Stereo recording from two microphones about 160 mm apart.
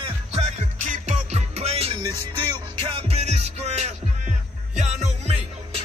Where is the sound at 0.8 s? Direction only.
50° right (ahead or behind).